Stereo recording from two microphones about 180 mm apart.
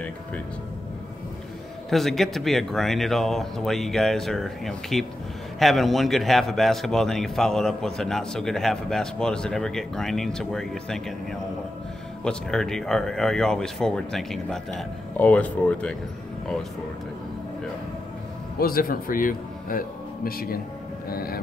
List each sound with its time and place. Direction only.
1.9 s a man's voice: centre (ahead or behind)
12.3 s a man's voice: 5° left (ahead or behind)
18.6 s speech: 55° left (ahead or behind)